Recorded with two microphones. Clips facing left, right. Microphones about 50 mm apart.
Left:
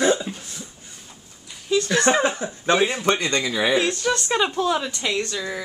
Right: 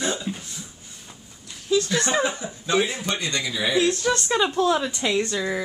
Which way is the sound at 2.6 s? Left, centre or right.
Left.